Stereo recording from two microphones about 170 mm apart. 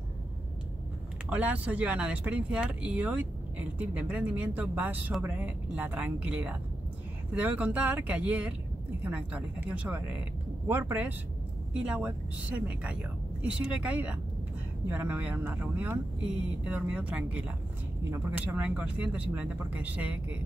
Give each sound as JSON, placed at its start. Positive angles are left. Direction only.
{"t": 1.3, "sound": "speech", "side_deg": -10}